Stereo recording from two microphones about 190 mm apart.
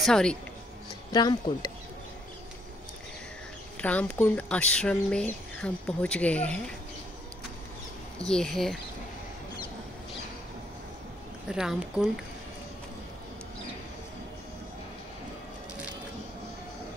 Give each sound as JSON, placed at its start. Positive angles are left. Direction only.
{"t": 0.0, "sound": "speech", "side_deg": 5}
{"t": 1.1, "sound": "speech", "side_deg": 20}
{"t": 3.7, "sound": "speech", "side_deg": 5}
{"t": 8.3, "sound": "speech", "side_deg": 5}
{"t": 11.4, "sound": "speech", "side_deg": -5}